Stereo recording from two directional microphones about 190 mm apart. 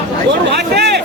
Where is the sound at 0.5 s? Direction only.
60° right (ahead or behind).